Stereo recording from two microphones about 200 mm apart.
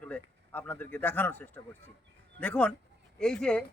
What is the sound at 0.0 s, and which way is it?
A man's voice, 5° left (ahead or behind).